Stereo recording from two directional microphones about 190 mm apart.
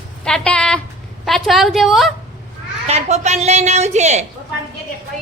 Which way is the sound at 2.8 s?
35° right (ahead or behind).